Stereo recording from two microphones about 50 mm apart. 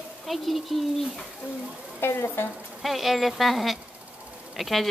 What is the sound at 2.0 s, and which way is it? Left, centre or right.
Speech, left.